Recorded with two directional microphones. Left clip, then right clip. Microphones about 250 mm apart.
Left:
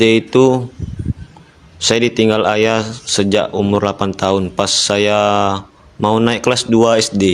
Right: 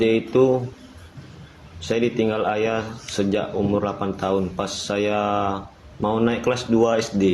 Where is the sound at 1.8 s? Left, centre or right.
Left.